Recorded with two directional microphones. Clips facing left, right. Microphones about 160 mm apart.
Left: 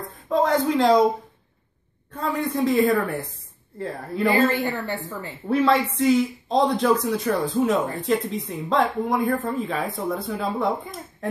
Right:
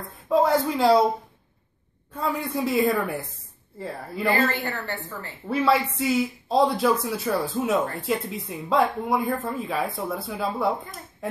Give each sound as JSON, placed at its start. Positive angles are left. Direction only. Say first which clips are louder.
{"t": 0.3, "sound": "speech", "louder": "even", "side_deg": -5}
{"t": 2.1, "sound": "a woman's voice", "louder": "left 2 dB", "side_deg": -10}
{"t": 4.3, "sound": "a woman's voice", "louder": "left 3 dB", "side_deg": 15}
{"t": 5.5, "sound": "speech", "louder": "left 2 dB", "side_deg": -5}